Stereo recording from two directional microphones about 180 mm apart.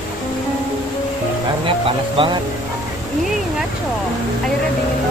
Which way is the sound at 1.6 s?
30° right (ahead or behind).